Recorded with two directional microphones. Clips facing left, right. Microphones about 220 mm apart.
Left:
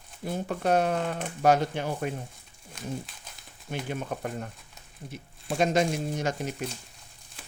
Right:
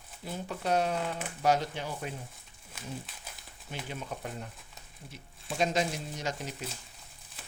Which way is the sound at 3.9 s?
55° left (ahead or behind).